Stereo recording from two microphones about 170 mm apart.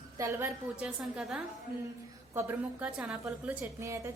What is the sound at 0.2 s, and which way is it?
A woman's voice, 15° right (ahead or behind).